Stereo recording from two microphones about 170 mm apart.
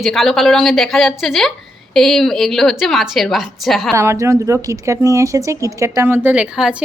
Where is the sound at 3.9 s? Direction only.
15° right (ahead or behind).